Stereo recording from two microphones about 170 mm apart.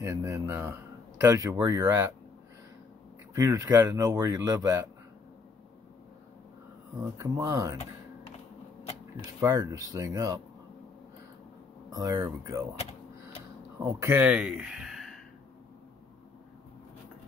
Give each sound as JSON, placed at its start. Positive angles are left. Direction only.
{"t": 0.0, "sound": "speech", "side_deg": -15}
{"t": 3.3, "sound": "speech", "side_deg": -20}
{"t": 7.2, "sound": "speech", "side_deg": -20}
{"t": 9.4, "sound": "speech", "side_deg": -20}
{"t": 11.9, "sound": "speech", "side_deg": -20}
{"t": 13.8, "sound": "speech", "side_deg": -15}